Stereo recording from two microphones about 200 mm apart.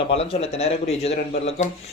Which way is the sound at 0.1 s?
30° left (ahead or behind).